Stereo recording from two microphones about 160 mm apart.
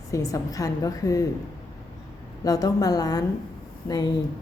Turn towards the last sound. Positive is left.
turn(degrees=25)  # may be behind; listen again after turning